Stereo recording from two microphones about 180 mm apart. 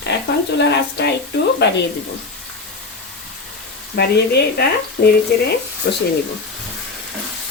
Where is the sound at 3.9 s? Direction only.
60° left (ahead or behind).